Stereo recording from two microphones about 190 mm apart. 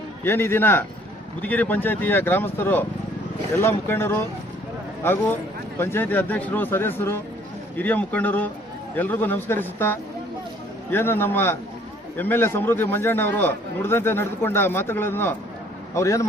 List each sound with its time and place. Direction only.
0.3 s a man's voice: 10° left (ahead or behind)